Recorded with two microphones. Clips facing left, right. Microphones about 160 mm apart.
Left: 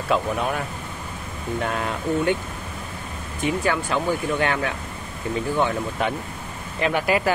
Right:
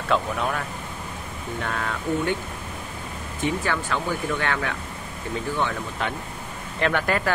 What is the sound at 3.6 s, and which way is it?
Speech, 15° left (ahead or behind).